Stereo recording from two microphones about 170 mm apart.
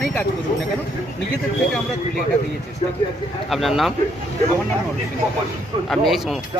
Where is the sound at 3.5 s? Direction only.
Centre (ahead or behind).